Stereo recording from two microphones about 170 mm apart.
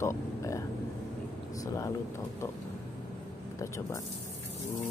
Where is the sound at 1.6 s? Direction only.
20° left (ahead or behind).